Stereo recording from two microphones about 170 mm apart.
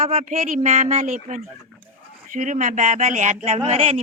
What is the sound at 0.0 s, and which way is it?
A woman's voice, 40° right (ahead or behind).